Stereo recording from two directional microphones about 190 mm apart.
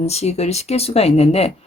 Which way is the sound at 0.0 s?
35° left (ahead or behind).